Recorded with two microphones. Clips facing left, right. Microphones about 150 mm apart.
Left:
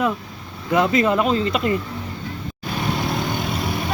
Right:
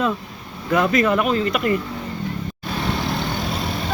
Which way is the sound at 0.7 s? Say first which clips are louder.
Even; 20° left (ahead or behind).